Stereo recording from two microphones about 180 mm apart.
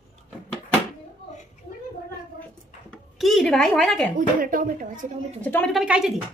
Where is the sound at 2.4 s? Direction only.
5° left (ahead or behind).